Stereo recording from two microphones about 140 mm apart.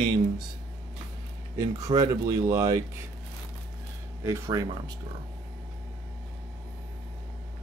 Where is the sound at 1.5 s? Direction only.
25° right (ahead or behind).